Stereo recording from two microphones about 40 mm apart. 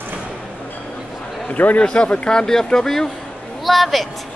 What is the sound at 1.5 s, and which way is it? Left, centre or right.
Speech, left.